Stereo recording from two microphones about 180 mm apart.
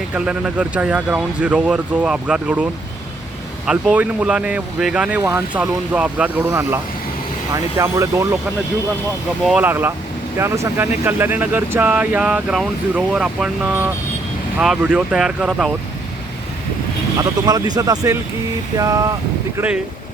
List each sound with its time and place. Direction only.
0.1 s speech: 5° right (ahead or behind)
3.7 s speech: 5° right (ahead or behind)
9.4 s speech: centre (ahead or behind)
9.6 s speech: 10° right (ahead or behind)
17.2 s speech: 20° right (ahead or behind)
19.5 s speech: 5° right (ahead or behind)